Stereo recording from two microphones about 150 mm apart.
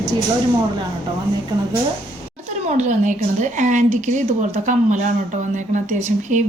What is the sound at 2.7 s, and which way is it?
A woman's voice, 55° right (ahead or behind).